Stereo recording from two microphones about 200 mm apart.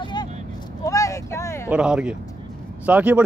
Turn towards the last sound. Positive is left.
turn(degrees=-5)  # may be behind; listen again after turning